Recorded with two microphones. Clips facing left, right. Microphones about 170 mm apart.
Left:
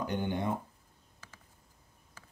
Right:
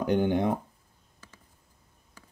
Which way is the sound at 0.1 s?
80° right.